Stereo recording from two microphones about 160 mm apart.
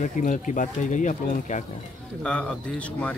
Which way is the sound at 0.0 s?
50° left (ahead or behind).